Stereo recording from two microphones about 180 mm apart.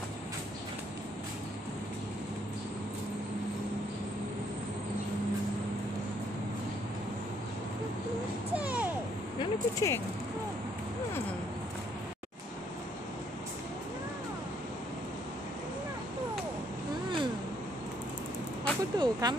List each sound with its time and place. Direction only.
8.5 s babbling: 10° right (ahead or behind)
9.4 s speech: 15° left (ahead or behind)
18.6 s vehicle: 25° right (ahead or behind)